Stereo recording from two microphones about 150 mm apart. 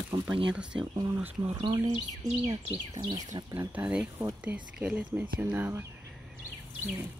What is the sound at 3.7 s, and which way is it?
Speech, 10° right (ahead or behind).